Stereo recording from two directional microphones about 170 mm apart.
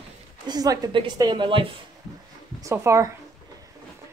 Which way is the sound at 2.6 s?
15° right (ahead or behind).